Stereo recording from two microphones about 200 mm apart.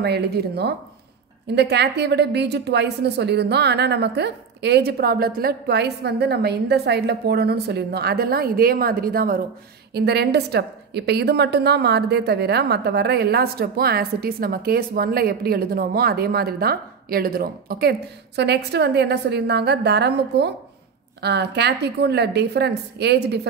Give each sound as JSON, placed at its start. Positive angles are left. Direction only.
{"t": 0.0, "sound": "a woman's voice", "side_deg": -55}